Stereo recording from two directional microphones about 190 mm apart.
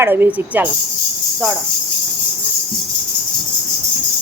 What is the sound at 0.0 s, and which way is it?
Speech, 10° right (ahead or behind).